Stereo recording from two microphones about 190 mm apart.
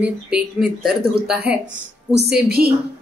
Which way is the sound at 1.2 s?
55° right (ahead or behind).